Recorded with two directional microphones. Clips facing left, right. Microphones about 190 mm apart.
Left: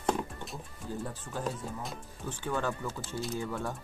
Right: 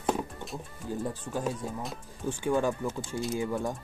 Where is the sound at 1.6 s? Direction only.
10° right (ahead or behind).